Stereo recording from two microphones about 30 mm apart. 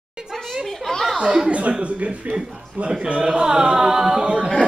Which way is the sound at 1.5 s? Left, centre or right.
Right.